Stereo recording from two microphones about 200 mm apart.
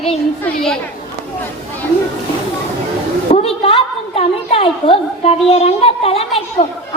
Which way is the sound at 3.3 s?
30° left (ahead or behind).